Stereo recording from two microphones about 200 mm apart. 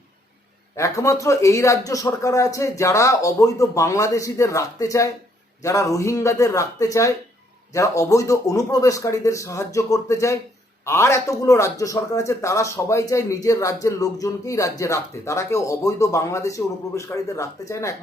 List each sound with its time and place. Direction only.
0.8 s speech: 15° left (ahead or behind)